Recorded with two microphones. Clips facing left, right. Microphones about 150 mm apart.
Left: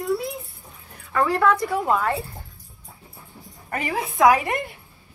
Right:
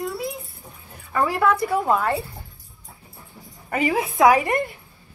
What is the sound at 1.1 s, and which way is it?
A woman's voice, 5° right (ahead or behind).